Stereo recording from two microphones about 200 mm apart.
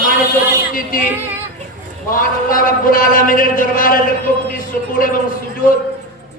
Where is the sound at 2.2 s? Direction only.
45° left (ahead or behind).